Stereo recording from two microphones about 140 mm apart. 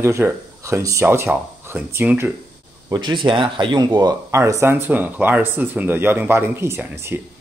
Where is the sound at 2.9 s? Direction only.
35° right (ahead or behind).